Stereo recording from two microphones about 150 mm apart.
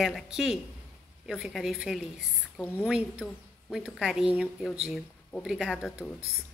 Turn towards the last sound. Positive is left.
turn(degrees=-5)  # may be behind; listen again after turning